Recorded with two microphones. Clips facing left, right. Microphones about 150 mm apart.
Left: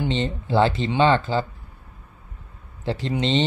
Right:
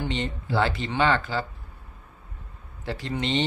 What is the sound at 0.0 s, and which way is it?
Speech, 20° left (ahead or behind).